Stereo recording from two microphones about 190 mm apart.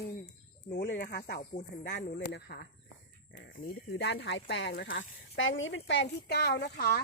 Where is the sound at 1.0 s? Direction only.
55° left (ahead or behind); by 4.9 s 70° left (ahead or behind).